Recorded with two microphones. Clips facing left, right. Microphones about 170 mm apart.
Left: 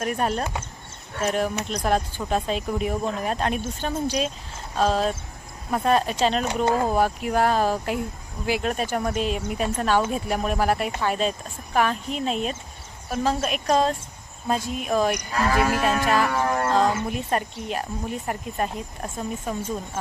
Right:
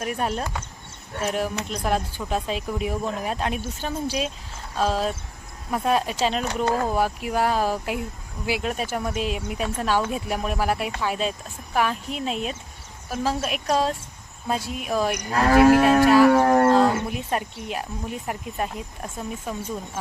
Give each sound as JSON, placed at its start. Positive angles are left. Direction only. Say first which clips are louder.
{"t": 0.0, "sound": "speech", "louder": "left 2 dB", "side_deg": 0}
{"t": 6.7, "sound": "speech", "louder": "left 2 dB", "side_deg": 15}
{"t": 7.0, "sound": "speech", "louder": "left 2 dB", "side_deg": -5}
{"t": 15.3, "sound": "cattle", "louder": "right 7 dB", "side_deg": -50}
{"t": 16.3, "sound": "wild animals", "louder": "right 7 dB", "side_deg": -45}
{"t": 16.7, "sound": "speech", "louder": "right 2 dB", "side_deg": -5}